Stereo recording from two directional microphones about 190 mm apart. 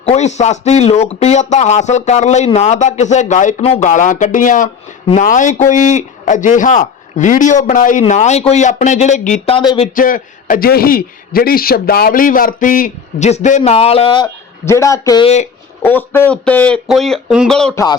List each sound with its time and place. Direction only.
0.0 s speech: 35° left (ahead or behind)
9.6 s speech: 30° left (ahead or behind)
9.9 s a man's voice: 45° left (ahead or behind); by 14.3 s 25° left (ahead or behind)
14.6 s speech: 15° left (ahead or behind)